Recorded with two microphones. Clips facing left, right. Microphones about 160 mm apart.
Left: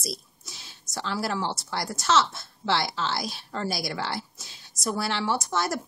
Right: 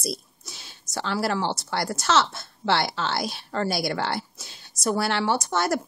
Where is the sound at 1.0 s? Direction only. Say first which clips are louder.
Right 3 dB; 65° right (ahead or behind).